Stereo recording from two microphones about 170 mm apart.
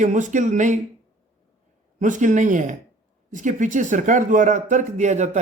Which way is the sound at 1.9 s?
50° right (ahead or behind).